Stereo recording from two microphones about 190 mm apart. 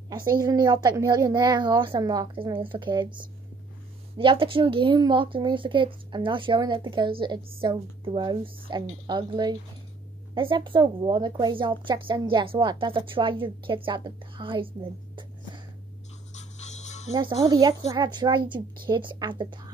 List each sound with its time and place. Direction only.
0.1 s a woman's voice: 20° right (ahead or behind)
16.3 s music: 40° left (ahead or behind)
17.1 s a woman's voice: 25° right (ahead or behind)